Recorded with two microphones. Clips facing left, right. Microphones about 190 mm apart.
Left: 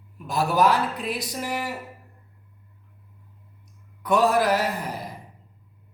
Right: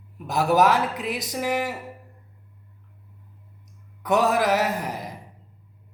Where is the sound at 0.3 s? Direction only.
20° right (ahead or behind).